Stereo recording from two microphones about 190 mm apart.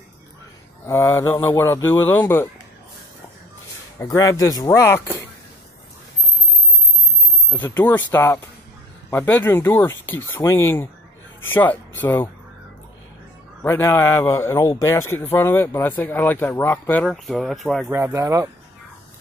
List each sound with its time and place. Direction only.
0.8 s a man's voice: 15° left (ahead or behind)
4.0 s a man's voice: 15° left (ahead or behind)
7.4 s a man's voice: 10° left (ahead or behind)
13.6 s a man's voice: 10° left (ahead or behind)
17.8 s speech: 15° right (ahead or behind)